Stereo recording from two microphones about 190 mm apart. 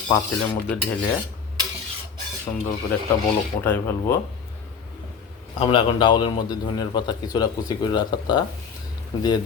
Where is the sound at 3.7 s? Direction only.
10° left (ahead or behind).